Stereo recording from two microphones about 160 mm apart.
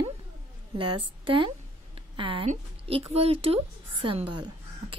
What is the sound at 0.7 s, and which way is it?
A woman's voice, 30° right (ahead or behind).